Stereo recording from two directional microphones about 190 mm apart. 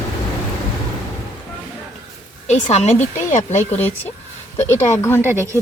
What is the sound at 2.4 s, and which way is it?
Speech, 35° left (ahead or behind).